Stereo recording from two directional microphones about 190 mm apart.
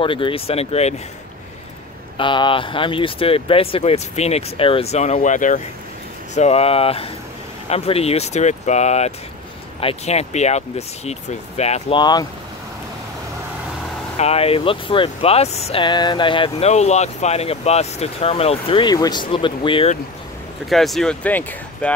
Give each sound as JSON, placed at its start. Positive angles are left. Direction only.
{"t": 0.0, "sound": "speech", "side_deg": 25}
{"t": 2.1, "sound": "speech", "side_deg": 25}
{"t": 12.0, "sound": "speech", "side_deg": 20}
{"t": 14.1, "sound": "speech", "side_deg": 35}
{"t": 20.7, "sound": "speech", "side_deg": 0}